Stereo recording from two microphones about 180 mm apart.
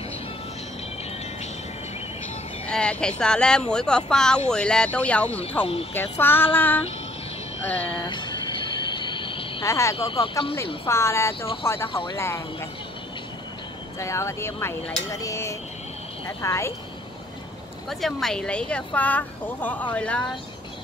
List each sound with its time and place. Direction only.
2.7 s speech: 5° left (ahead or behind)
7.9 s a sound: 25° left (ahead or behind)
9.7 s speech: 15° left (ahead or behind)
9.9 s speech: 30° left (ahead or behind)
10.9 s speech: 15° left (ahead or behind)
11.9 s speech: 30° left (ahead or behind)
12.2 s speech: 15° left (ahead or behind)
13.9 s speech: 15° left (ahead or behind)
17.8 s speech: centre (ahead or behind)